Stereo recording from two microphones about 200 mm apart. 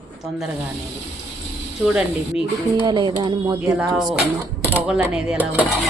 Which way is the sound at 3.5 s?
5° right (ahead or behind).